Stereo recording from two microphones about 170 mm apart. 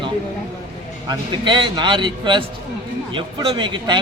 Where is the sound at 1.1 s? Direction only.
30° right (ahead or behind).